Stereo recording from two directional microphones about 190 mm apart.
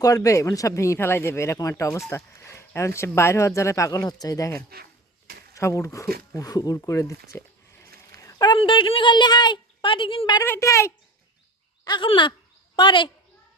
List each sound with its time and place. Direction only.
0.0 s a woman's voice: 20° left (ahead or behind)
10.4 s speech: 15° left (ahead or behind)
11.9 s a sound: 25° left (ahead or behind)
12.7 s a woman's voice: 25° left (ahead or behind)